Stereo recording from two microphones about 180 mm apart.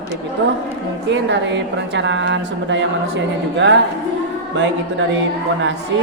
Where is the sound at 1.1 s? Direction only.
90° right.